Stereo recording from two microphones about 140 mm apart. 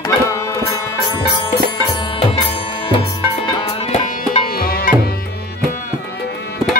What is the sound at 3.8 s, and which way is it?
Music, 50° left (ahead or behind).